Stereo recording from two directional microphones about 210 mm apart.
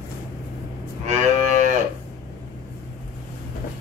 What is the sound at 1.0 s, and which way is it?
Moo, 35° right (ahead or behind).